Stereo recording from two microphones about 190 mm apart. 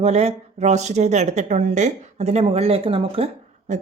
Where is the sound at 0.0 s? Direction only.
35° right (ahead or behind).